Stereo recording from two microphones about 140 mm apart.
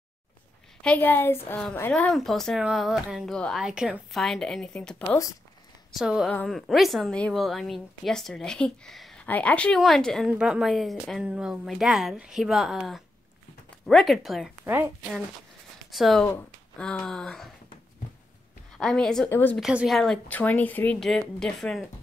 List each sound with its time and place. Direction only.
0.8 s a woman's voice: 10° left (ahead or behind)
15.9 s a woman's voice: centre (ahead or behind)
18.8 s a woman's voice: 5° left (ahead or behind)
19.7 s speech: 5° right (ahead or behind)
20.0 s a woman's voice: 5° left (ahead or behind)